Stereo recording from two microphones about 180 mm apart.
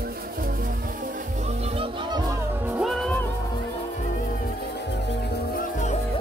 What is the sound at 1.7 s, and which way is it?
Music, 30° right (ahead or behind).